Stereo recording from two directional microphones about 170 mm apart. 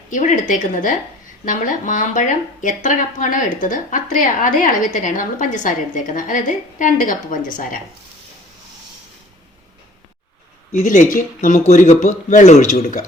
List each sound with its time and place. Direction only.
0.1 s speech: 50° left (ahead or behind)
10.7 s speech: 45° left (ahead or behind)